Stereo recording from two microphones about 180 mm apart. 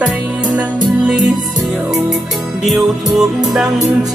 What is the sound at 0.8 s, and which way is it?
Music, 5° right (ahead or behind).